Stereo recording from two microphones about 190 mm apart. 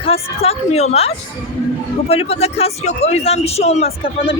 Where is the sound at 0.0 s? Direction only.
30° left (ahead or behind).